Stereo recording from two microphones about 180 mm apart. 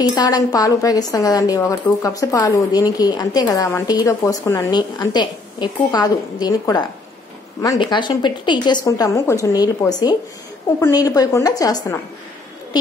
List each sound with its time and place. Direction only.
0.1 s a woman's voice: 20° left (ahead or behind)
10.8 s a woman's voice: 20° left (ahead or behind)